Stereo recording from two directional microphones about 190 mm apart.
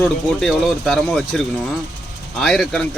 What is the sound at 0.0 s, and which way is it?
Speech, centre (ahead or behind).